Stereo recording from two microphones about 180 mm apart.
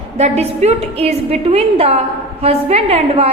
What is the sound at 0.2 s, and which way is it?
A woman's voice, 35° right (ahead or behind).